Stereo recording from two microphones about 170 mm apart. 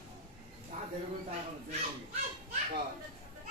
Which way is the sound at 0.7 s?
45° right (ahead or behind).